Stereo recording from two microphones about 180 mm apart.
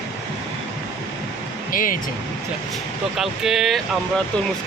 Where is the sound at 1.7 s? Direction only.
50° left (ahead or behind).